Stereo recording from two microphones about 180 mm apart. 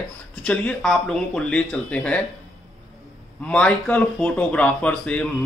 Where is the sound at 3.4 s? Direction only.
5° left (ahead or behind).